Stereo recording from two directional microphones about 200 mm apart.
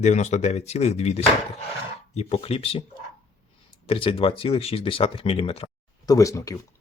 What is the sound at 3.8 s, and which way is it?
Speech, 30° left (ahead or behind).